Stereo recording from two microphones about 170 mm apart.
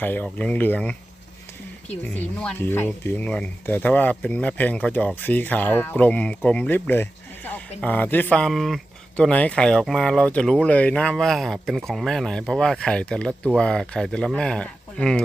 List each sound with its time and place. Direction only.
0.0 s speech: 10° left (ahead or behind)